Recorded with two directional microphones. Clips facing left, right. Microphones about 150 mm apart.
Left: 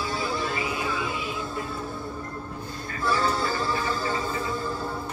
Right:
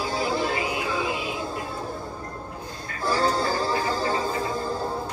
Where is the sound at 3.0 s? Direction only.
40° right (ahead or behind).